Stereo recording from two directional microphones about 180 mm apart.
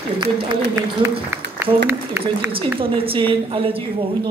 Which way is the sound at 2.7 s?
30° right (ahead or behind).